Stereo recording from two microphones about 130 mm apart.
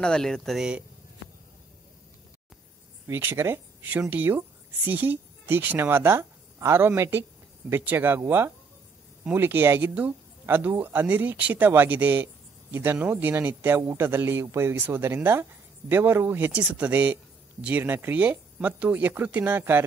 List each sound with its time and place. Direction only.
0.0 s speech: 5° left (ahead or behind)
3.1 s a woman's voice: 15° right (ahead or behind)